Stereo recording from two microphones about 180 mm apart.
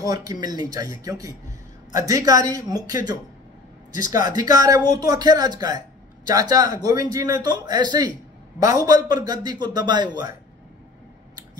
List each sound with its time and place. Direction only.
0.0 s a man's voice: 20° right (ahead or behind)
4.3 s a man's voice: 20° right (ahead or behind)